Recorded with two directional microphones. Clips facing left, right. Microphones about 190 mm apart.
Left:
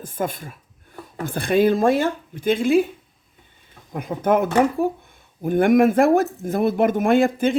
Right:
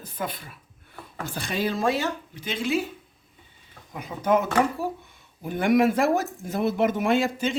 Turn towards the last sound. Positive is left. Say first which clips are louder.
# left 6 dB
turn(degrees=55)  # may be behind; listen again after turning